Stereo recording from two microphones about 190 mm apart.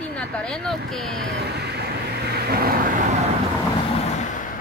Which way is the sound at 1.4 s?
60° right (ahead or behind).